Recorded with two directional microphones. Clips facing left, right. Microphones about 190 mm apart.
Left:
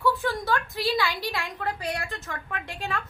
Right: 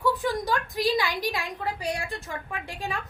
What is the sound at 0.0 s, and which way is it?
A woman's voice, 15° right (ahead or behind).